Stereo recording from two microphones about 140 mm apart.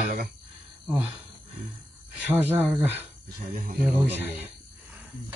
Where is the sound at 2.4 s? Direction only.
15° right (ahead or behind).